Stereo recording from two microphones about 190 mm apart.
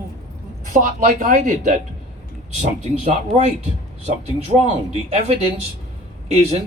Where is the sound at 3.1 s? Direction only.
35° right (ahead or behind).